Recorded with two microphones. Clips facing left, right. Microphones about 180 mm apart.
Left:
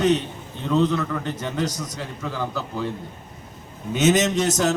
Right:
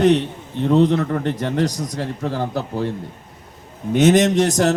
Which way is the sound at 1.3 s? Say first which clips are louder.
Right 5 dB; 65° right (ahead or behind).